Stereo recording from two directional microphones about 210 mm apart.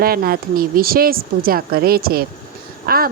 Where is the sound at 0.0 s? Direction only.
45° right (ahead or behind).